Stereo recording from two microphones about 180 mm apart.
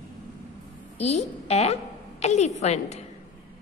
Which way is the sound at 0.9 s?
35° left (ahead or behind).